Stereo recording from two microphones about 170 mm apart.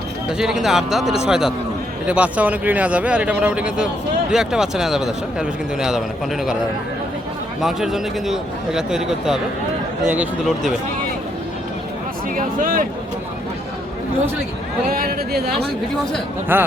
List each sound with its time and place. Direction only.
0.3 s a man's voice: 5° right (ahead or behind)
7.6 s a man's voice: centre (ahead or behind)
12.4 s speech: 55° right (ahead or behind)
14.8 s speech: 60° right (ahead or behind)
16.5 s a man's voice: 10° right (ahead or behind)